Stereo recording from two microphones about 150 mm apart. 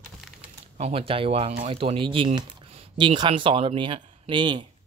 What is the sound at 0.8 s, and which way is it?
Speech, 40° right (ahead or behind).